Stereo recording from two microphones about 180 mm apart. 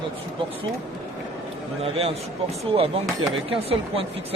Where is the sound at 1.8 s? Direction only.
35° right (ahead or behind).